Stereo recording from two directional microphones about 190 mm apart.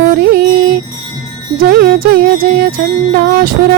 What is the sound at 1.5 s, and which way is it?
Music, 50° right (ahead or behind).